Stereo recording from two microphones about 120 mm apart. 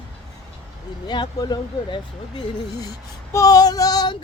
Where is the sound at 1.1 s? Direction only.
35° left (ahead or behind).